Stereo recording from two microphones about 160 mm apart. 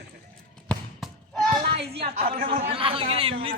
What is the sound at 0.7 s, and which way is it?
Basketball bounce, centre (ahead or behind).